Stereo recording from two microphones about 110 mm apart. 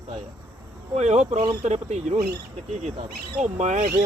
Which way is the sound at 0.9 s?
90° right.